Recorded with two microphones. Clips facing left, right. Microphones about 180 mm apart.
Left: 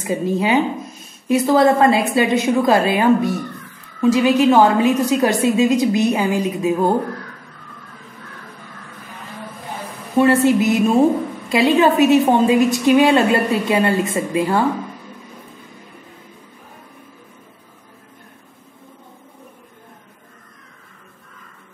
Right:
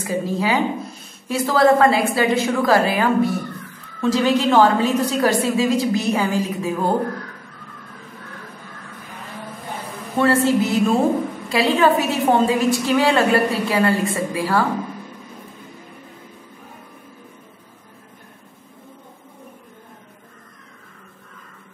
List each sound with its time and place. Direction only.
0.0 s a woman's voice: 20° left (ahead or behind)
10.1 s a woman's voice: 15° left (ahead or behind)